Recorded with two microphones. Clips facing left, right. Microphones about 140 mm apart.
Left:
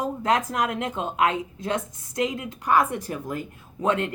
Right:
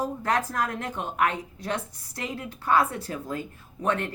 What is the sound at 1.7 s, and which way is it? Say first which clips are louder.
A woman's voice: left 7 dB; 20° left (ahead or behind).